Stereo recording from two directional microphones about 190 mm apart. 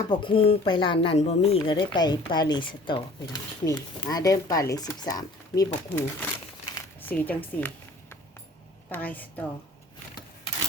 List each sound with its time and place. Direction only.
0.1 s speech: 25° left (ahead or behind); by 7.7 s 10° left (ahead or behind)
8.9 s a woman's voice: 10° left (ahead or behind)